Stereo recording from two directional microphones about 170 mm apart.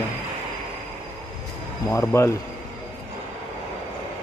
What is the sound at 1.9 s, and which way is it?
Speech, 15° left (ahead or behind).